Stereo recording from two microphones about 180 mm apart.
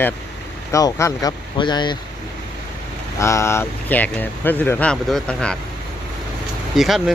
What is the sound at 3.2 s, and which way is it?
Speech, 15° left (ahead or behind).